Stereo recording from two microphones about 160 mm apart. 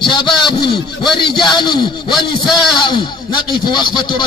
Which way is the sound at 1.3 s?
30° left (ahead or behind).